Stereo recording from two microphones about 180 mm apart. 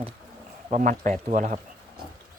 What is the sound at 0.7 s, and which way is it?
Speech, 45° right (ahead or behind).